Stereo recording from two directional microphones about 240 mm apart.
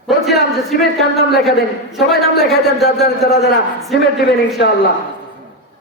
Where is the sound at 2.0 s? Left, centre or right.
Centre.